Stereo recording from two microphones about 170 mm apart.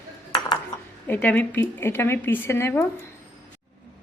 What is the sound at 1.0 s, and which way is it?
A woman's voice, 10° left (ahead or behind).